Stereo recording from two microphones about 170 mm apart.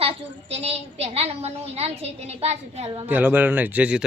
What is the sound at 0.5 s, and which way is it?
Speech, 40° right (ahead or behind).